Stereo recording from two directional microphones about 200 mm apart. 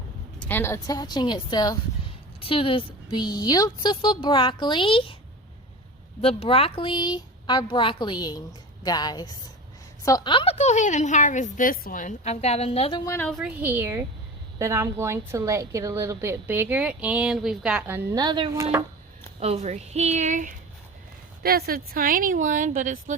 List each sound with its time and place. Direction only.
0.3 s a woman's voice: 10° left (ahead or behind); by 5.1 s 25° left (ahead or behind)
6.2 s a woman's voice: 30° left (ahead or behind)
13.1 s a woman's voice: 10° left (ahead or behind)
13.4 s a woman's voice: 10° right (ahead or behind)
19.4 s speech: 30° right (ahead or behind)
21.4 s speech: 50° right (ahead or behind)